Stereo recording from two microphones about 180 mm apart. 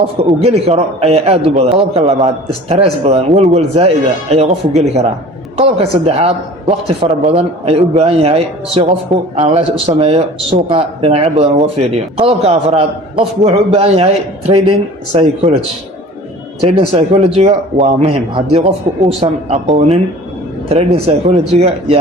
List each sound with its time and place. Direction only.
0.0 s a man's voice: 35° right (ahead or behind)
16.6 s a man's voice: 30° right (ahead or behind)